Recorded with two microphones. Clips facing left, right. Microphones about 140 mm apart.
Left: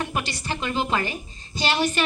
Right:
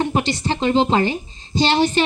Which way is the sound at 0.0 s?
25° right (ahead or behind).